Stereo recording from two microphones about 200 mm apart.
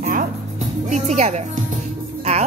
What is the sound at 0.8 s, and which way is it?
Music, 35° right (ahead or behind).